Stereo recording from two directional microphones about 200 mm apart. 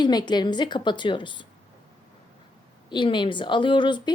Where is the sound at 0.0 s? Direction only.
20° left (ahead or behind).